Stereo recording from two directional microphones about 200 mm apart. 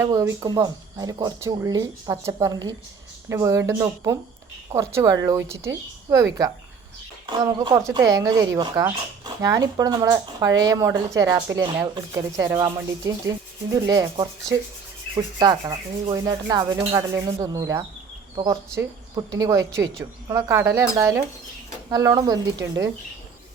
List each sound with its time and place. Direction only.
0.0 s speech: 15° right (ahead or behind)
7.3 s speech: 20° right (ahead or behind)
8.5 s rub: 20° right (ahead or behind)
9.4 s speech: 15° right (ahead or behind)
15.1 s rub: 20° right (ahead or behind)
18.3 s speech: 15° right (ahead or behind)
21.8 s rub: 20° right (ahead or behind)
22.6 s speech: 15° right (ahead or behind)